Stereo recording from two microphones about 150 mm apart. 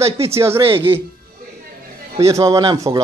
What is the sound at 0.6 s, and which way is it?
Speech, 35° right (ahead or behind).